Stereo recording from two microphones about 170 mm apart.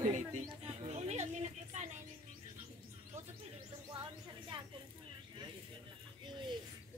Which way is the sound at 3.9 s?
30° right (ahead or behind).